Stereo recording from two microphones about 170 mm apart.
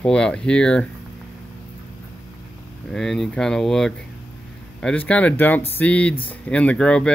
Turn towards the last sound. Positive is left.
turn(degrees=5)  # may be behind; listen again after turning